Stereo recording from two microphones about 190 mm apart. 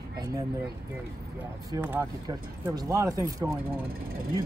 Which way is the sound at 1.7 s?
15° right (ahead or behind).